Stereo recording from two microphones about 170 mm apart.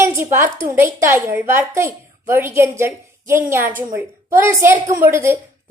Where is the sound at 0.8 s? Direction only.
15° right (ahead or behind).